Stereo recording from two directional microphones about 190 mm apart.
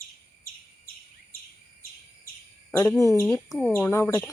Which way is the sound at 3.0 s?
15° left (ahead or behind).